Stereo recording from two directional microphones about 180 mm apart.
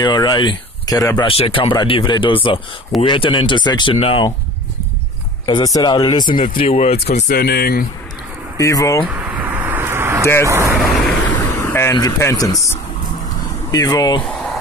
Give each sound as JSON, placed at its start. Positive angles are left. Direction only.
{"t": 0.0, "sound": "speech", "side_deg": 25}
{"t": 5.5, "sound": "speech", "side_deg": 20}
{"t": 7.2, "sound": "speech", "side_deg": 60}
{"t": 8.5, "sound": "speech", "side_deg": 15}
{"t": 9.0, "sound": "a sound", "side_deg": -10}
{"t": 10.4, "sound": "speech", "side_deg": -15}
{"t": 10.8, "sound": "vehicle", "side_deg": 0}
{"t": 13.7, "sound": "speech", "side_deg": 20}